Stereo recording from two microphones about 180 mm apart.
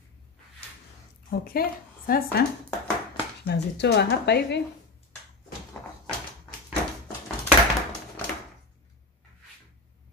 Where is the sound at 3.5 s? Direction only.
70° left (ahead or behind).